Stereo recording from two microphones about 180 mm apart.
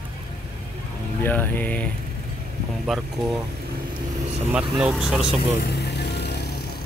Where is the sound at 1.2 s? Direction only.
10° left (ahead or behind).